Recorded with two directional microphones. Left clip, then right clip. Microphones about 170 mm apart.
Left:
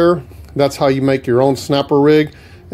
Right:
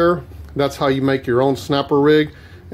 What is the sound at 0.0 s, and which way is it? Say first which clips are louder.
Speech: left 3 dB; 35° left (ahead or behind).